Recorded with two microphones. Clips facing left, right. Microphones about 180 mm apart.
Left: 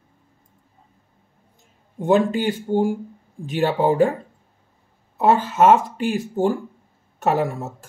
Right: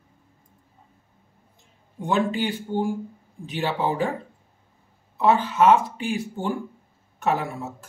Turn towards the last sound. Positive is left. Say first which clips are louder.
# left 4 dB
turn(degrees=45)  # may be behind; listen again after turning